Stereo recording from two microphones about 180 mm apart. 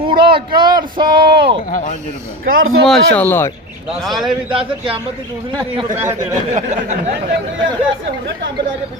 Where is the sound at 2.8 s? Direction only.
Centre (ahead or behind).